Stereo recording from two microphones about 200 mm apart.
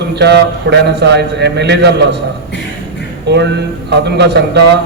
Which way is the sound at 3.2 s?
60° right (ahead or behind).